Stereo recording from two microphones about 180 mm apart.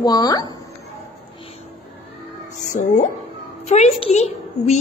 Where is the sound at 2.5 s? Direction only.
40° left (ahead or behind).